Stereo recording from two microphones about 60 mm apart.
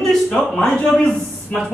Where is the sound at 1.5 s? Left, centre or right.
Left.